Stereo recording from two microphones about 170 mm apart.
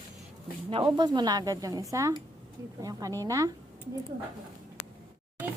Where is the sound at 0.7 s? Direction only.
30° right (ahead or behind).